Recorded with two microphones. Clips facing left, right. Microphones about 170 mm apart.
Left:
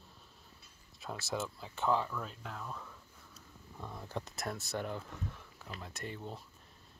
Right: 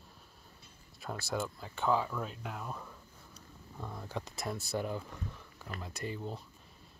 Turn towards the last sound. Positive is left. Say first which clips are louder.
# right 4 dB
turn(degrees=0)  # may be behind; listen again after turning